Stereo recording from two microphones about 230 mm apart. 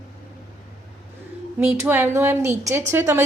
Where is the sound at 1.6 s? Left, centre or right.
Centre.